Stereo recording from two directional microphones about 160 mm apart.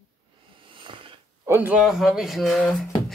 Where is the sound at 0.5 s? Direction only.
30° right (ahead or behind).